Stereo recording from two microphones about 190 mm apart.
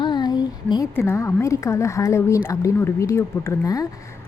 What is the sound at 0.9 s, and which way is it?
Speech, 15° left (ahead or behind).